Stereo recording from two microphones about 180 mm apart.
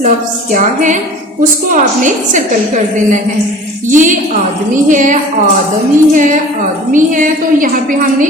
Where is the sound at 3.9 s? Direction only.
45° right (ahead or behind).